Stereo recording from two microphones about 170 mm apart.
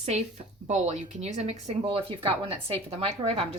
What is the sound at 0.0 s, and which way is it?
A woman's voice, 40° right (ahead or behind).